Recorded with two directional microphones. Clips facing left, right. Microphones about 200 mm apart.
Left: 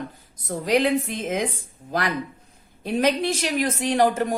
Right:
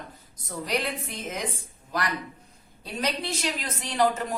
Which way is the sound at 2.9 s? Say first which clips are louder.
Left 9 dB; 50° left (ahead or behind).